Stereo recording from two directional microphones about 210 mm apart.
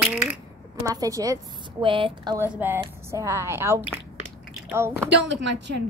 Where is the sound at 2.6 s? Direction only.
10° right (ahead or behind).